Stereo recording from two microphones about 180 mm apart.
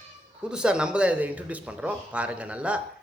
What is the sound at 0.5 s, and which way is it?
A man's voice, 5° right (ahead or behind).